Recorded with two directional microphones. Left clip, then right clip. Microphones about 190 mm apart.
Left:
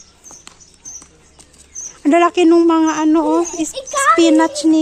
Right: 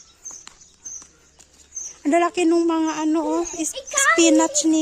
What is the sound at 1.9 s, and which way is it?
Speech, 15° right (ahead or behind).